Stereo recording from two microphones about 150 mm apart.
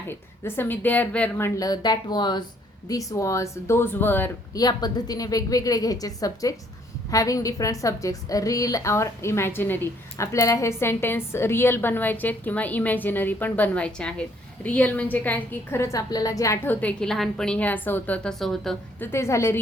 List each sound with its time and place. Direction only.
0.1 s a woman's voice: 15° left (ahead or behind)
4.5 s a woman's voice: 25° left (ahead or behind)
16.8 s a woman's voice: 5° left (ahead or behind)
18.9 s a woman's voice: 15° left (ahead or behind)